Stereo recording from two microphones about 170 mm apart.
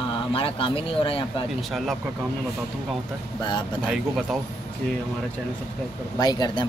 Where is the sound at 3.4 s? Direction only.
25° left (ahead or behind).